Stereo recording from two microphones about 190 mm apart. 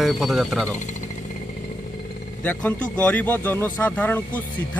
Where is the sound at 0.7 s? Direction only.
40° left (ahead or behind).